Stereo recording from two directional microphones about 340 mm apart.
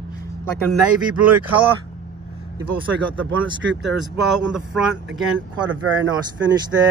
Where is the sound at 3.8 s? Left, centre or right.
Centre.